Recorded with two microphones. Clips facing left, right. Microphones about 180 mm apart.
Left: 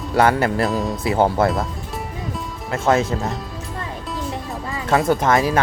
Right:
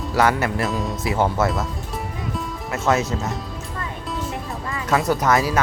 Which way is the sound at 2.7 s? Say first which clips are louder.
Left 3 dB; 30° left (ahead or behind).